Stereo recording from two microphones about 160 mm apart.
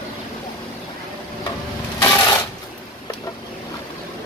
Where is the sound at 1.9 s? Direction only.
25° left (ahead or behind).